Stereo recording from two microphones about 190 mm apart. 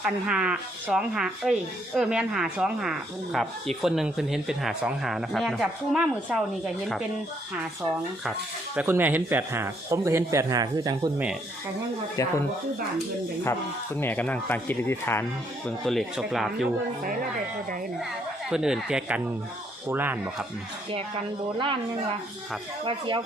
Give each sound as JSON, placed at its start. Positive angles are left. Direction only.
{"t": 0.0, "sound": "speech", "side_deg": -5}
{"t": 8.7, "sound": "a man's voice", "side_deg": -10}
{"t": 13.4, "sound": "speech", "side_deg": 10}
{"t": 15.9, "sound": "speech", "side_deg": 0}
{"t": 18.5, "sound": "a man's voice", "side_deg": -5}
{"t": 22.8, "sound": "speech", "side_deg": -25}